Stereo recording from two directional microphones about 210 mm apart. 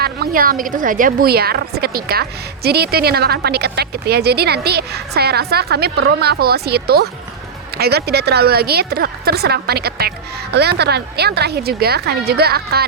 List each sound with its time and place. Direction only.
0.0 s a woman's voice: 45° right (ahead or behind)